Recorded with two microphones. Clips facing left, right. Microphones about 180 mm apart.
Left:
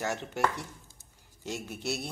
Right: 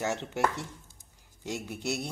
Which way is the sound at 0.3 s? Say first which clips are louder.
Right 1 dB; 20° right (ahead or behind).